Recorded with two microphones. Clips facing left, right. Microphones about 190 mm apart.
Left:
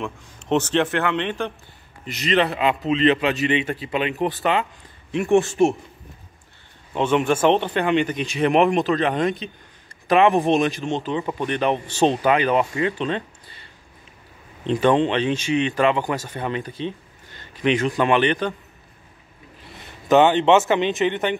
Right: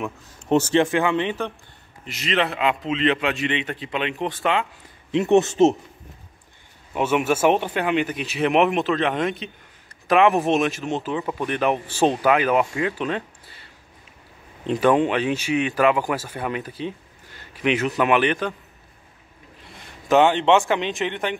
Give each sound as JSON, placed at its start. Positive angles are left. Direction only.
{"t": 0.0, "sound": "speech", "side_deg": -10}
{"t": 5.1, "sound": "speech", "side_deg": -20}
{"t": 6.9, "sound": "speech", "side_deg": -10}
{"t": 19.6, "sound": "a man's voice", "side_deg": 0}